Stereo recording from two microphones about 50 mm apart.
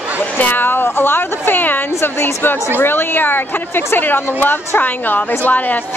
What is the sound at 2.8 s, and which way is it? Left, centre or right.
A woman's voice, left.